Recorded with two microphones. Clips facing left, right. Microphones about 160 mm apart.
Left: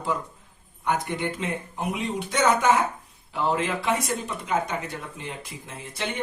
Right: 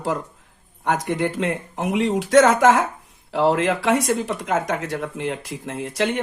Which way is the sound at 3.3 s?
75° right (ahead or behind).